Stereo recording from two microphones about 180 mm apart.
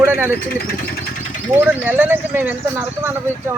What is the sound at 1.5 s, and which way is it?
Speech, 10° right (ahead or behind).